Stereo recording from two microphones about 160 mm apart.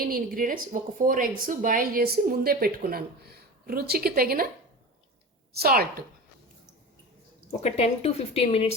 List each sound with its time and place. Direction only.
0.0 s a woman's voice: 65° right (ahead or behind)
5.5 s a woman's voice: 70° right (ahead or behind)
7.6 s speech: 40° left (ahead or behind)